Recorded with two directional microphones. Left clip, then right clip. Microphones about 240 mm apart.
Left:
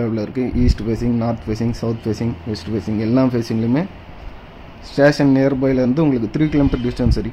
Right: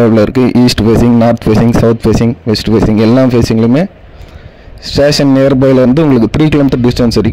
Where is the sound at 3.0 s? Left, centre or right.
Right.